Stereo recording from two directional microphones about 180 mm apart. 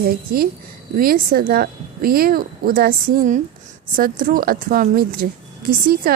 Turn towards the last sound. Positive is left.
turn(degrees=-50)  # may be behind; listen again after turning